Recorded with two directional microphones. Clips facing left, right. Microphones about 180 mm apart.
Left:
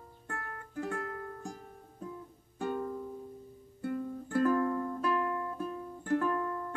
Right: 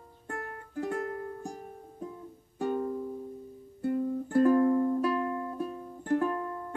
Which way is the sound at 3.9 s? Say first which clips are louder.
Right 6 dB; 30° right (ahead or behind).